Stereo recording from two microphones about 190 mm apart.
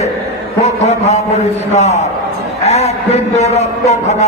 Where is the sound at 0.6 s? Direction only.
35° left (ahead or behind).